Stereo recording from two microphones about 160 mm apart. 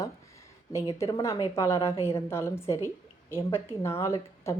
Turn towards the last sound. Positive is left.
turn(degrees=15)  # may be behind; listen again after turning